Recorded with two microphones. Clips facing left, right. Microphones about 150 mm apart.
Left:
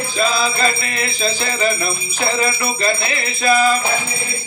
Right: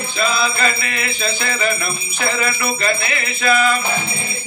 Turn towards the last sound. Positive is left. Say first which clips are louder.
# left 2 dB
turn(degrees=35)  # may be behind; listen again after turning